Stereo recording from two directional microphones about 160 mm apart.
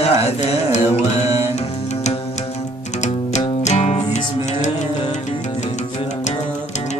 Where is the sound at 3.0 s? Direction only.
45° left (ahead or behind).